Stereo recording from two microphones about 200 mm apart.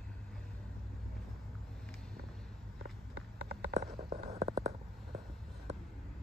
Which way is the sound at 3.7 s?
35° right (ahead or behind).